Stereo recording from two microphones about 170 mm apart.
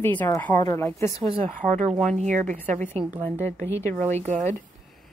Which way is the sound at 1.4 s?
45° right (ahead or behind).